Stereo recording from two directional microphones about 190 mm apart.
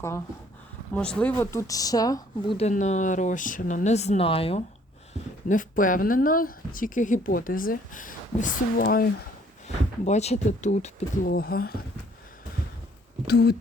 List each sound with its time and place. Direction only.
0.9 s speech: 5° left (ahead or behind); by 4.6 s 30° left (ahead or behind)
5.5 s speech: 45° left (ahead or behind)
9.6 s speech: 35° left (ahead or behind)
11.3 s speech: 50° left (ahead or behind)
13.2 s speech: 60° left (ahead or behind)